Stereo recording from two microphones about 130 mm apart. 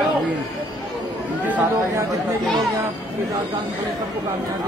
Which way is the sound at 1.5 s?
15° right (ahead or behind).